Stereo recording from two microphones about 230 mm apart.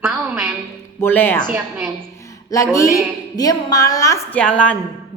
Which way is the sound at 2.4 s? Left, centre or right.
Centre.